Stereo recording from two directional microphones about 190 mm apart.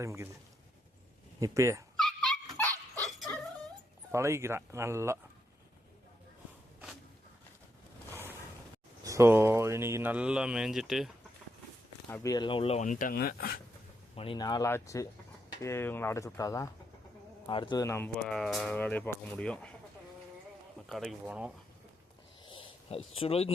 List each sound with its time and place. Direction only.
0.0 s speech: 15° right (ahead or behind)
1.4 s speech: 15° right (ahead or behind)
2.0 s dog: 5° left (ahead or behind)
2.7 s dog: 15° right (ahead or behind)
3.1 s dog: centre (ahead or behind)
4.1 s speech: 15° right (ahead or behind)
9.0 s speech: 15° right (ahead or behind)
12.1 s speech: 15° left (ahead or behind); by 13.6 s 55° left (ahead or behind)
14.2 s speech: 25° left (ahead or behind); by 19.7 s 5° left (ahead or behind)
20.9 s speech: centre (ahead or behind)
22.4 s a sound: 30° left (ahead or behind)